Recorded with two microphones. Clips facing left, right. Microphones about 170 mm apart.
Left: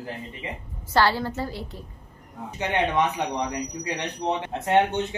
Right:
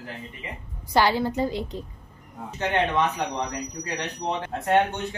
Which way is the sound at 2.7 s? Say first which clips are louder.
Even; 15° left (ahead or behind).